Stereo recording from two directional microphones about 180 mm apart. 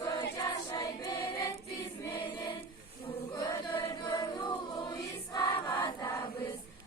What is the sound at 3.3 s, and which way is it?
Choir, 20° left (ahead or behind).